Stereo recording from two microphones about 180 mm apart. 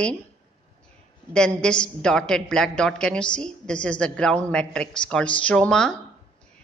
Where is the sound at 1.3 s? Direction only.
5° left (ahead or behind).